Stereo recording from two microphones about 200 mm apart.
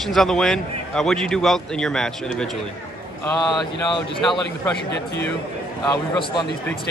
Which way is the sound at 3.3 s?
20° left (ahead or behind).